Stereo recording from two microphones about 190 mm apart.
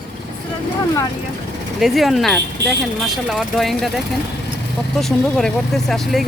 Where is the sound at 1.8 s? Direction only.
Centre (ahead or behind).